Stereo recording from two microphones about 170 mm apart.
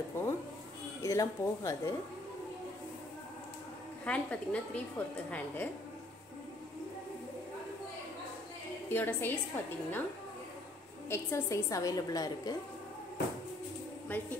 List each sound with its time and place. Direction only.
0.2 s a woman's voice: 10° left (ahead or behind)
4.0 s a woman's voice: 10° left (ahead or behind)
8.8 s a woman's voice: 15° left (ahead or behind)
11.1 s a woman's voice: 15° left (ahead or behind)
14.1 s a woman's voice: 10° left (ahead or behind)